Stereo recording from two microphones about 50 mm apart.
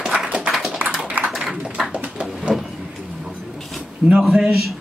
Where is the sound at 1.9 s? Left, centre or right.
Right.